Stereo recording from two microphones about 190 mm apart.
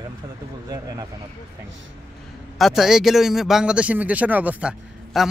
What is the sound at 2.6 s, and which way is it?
Speech, centre (ahead or behind).